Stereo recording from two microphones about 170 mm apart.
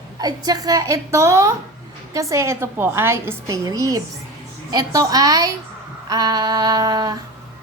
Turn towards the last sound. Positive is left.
turn(degrees=-25)  # may be behind; listen again after turning